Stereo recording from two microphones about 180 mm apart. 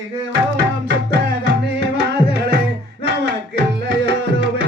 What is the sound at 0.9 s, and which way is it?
Music, 75° right (ahead or behind).